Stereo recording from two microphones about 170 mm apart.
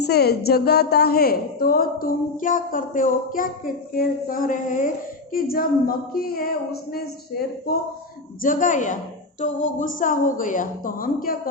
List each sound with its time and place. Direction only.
0.0 s a woman's voice: 70° left (ahead or behind)
8.4 s a woman's voice: 50° left (ahead or behind)